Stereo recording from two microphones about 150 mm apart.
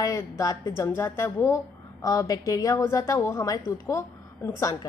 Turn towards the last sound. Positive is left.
turn(degrees=20)  # may be behind; listen again after turning